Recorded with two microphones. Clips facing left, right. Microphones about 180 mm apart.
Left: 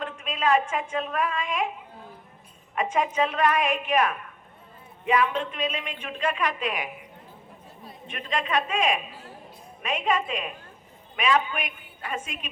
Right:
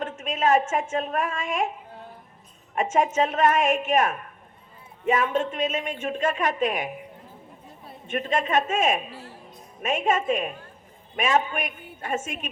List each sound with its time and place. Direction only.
0.0 s a woman's voice: 45° right (ahead or behind)
2.7 s a woman's voice: 45° right (ahead or behind)